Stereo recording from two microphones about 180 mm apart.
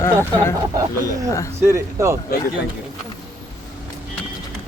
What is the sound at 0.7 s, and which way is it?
Speech, 20° right (ahead or behind).